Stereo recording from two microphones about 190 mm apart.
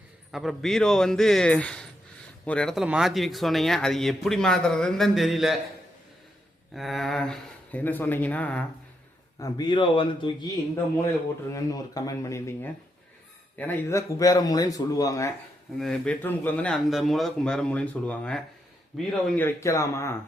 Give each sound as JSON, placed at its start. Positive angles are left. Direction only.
{"t": 0.3, "sound": "speech", "side_deg": 0}
{"t": 6.7, "sound": "speech", "side_deg": 0}
{"t": 9.4, "sound": "a man's voice", "side_deg": 20}
{"t": 11.5, "sound": "speech", "side_deg": 20}
{"t": 15.8, "sound": "speech", "side_deg": 5}